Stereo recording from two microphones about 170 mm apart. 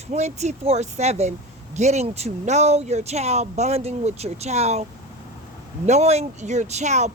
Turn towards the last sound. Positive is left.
turn(degrees=-40)  # may be behind; listen again after turning